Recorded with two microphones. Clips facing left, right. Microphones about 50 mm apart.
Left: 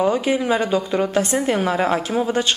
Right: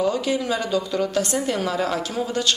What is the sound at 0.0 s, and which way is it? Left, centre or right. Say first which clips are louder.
A woman's voice: left 3 dB; left.